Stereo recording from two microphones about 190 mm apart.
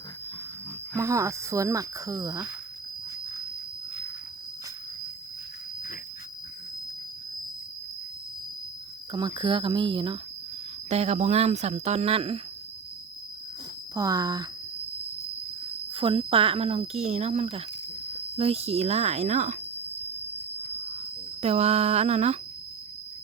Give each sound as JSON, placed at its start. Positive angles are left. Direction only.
{"t": 0.9, "sound": "speech", "side_deg": -15}
{"t": 9.1, "sound": "speech", "side_deg": -25}
{"t": 13.9, "sound": "speech", "side_deg": -20}
{"t": 15.9, "sound": "speech", "side_deg": -30}
{"t": 21.4, "sound": "speech", "side_deg": -35}